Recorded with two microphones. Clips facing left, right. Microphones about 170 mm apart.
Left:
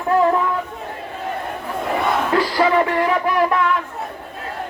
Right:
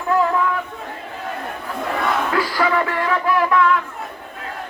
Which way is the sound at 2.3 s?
25° left (ahead or behind).